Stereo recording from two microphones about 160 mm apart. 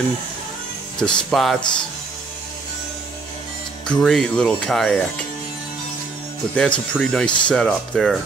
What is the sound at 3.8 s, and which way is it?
Speech, 5° left (ahead or behind).